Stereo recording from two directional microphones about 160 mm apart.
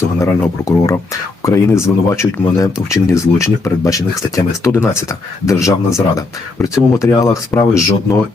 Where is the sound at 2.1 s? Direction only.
20° left (ahead or behind).